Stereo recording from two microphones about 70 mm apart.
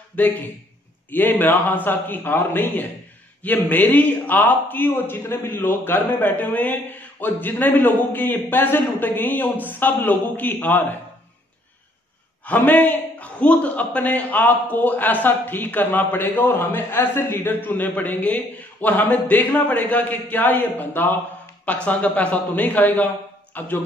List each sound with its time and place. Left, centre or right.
0.1 s a man's voice: left
12.4 s a man's voice: left